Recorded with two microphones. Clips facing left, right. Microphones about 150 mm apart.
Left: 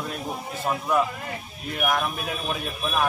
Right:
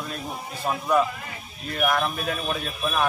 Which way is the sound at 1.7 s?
10° left (ahead or behind).